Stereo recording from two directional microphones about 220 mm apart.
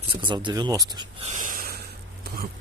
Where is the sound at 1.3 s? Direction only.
35° right (ahead or behind).